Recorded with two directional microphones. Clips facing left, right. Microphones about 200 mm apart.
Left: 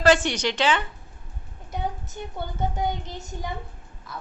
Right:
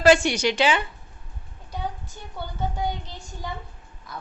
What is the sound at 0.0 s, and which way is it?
Speech, 10° right (ahead or behind).